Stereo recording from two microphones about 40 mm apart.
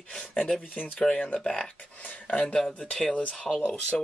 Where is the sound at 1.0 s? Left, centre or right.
Left.